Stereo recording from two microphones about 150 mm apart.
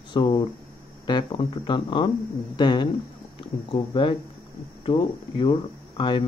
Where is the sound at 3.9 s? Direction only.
30° left (ahead or behind).